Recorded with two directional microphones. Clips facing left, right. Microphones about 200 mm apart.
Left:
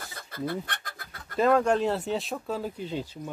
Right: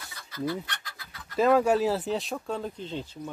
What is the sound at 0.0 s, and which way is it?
Chicken, 55° left (ahead or behind).